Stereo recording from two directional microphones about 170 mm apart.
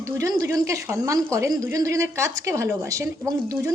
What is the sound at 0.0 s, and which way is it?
A woman's voice, 20° right (ahead or behind).